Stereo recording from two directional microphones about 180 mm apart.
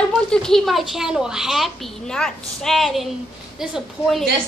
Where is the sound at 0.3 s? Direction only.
5° left (ahead or behind).